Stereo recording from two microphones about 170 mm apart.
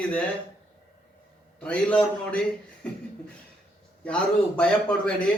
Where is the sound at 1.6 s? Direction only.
5° left (ahead or behind).